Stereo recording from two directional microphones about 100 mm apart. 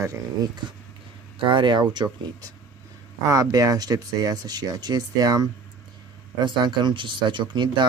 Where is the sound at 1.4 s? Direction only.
55° right (ahead or behind).